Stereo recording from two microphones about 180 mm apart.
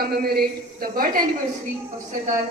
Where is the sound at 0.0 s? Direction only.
55° right (ahead or behind).